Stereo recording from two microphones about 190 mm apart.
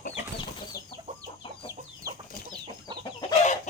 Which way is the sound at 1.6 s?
20° right (ahead or behind).